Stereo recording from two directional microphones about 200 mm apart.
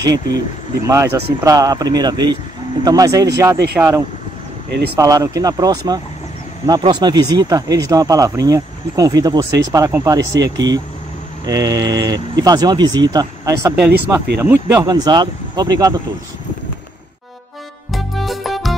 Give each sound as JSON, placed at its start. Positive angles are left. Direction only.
{"t": 0.0, "sound": "speech", "side_deg": -15}
{"t": 14.8, "sound": "speech", "side_deg": -20}
{"t": 17.9, "sound": "music", "side_deg": 0}